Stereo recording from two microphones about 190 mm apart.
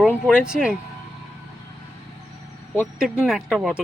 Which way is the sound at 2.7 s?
5° right (ahead or behind).